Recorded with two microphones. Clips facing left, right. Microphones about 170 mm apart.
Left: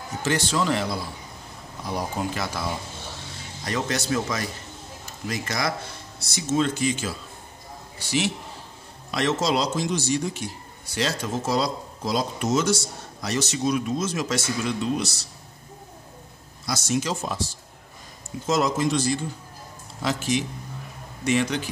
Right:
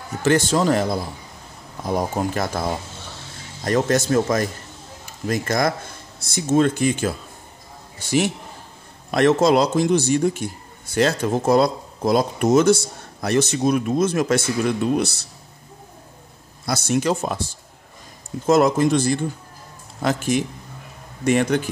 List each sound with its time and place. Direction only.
0.2 s a man's voice: 50° right (ahead or behind)
16.6 s a man's voice: 60° right (ahead or behind)